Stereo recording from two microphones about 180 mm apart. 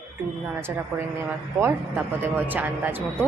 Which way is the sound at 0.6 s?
15° right (ahead or behind).